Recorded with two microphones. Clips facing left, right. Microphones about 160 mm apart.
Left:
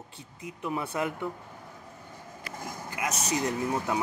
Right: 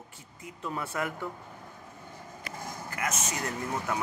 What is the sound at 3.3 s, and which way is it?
Speech, 20° left (ahead or behind).